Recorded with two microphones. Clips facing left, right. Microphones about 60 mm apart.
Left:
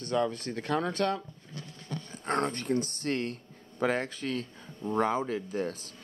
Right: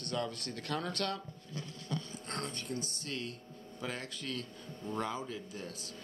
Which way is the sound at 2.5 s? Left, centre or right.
Left.